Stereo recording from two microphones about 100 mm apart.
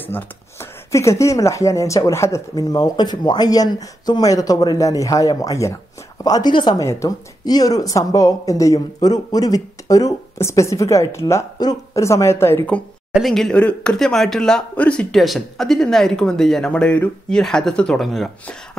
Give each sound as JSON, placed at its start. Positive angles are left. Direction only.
{"t": 0.0, "sound": "speech", "side_deg": 25}
{"t": 2.7, "sound": "a woman's voice", "side_deg": 45}
{"t": 6.8, "sound": "a woman's voice", "side_deg": 30}
{"t": 13.1, "sound": "speech", "side_deg": 0}